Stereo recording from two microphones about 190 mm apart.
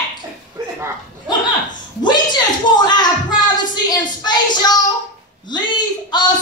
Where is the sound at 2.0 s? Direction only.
20° left (ahead or behind).